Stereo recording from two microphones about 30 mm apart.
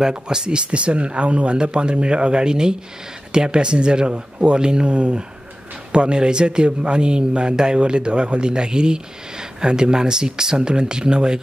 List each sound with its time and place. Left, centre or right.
0.0 s a man's voice: right
4.8 s a man's voice: right